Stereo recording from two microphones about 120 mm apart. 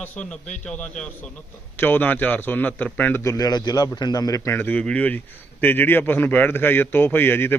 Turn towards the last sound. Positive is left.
turn(degrees=20)  # may be behind; listen again after turning